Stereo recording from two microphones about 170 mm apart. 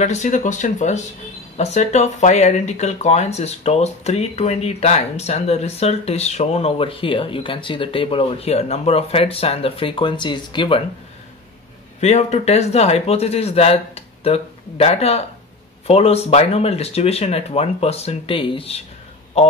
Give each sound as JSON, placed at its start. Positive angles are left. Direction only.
{"t": 0.0, "sound": "speech", "side_deg": 45}
{"t": 12.0, "sound": "speech", "side_deg": 40}